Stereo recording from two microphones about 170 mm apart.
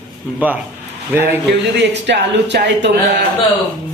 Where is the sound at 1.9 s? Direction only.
90° right.